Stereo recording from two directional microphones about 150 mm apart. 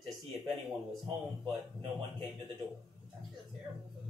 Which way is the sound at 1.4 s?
30° right (ahead or behind).